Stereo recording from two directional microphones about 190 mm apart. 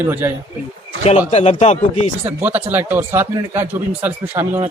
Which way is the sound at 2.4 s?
10° right (ahead or behind).